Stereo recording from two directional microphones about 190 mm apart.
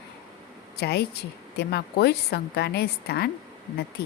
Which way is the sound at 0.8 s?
60° left (ahead or behind).